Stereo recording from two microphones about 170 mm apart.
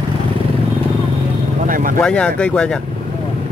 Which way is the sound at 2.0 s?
5° left (ahead or behind).